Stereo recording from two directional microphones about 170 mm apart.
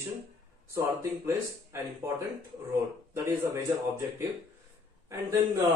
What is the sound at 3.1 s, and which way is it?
Speech, 15° right (ahead or behind).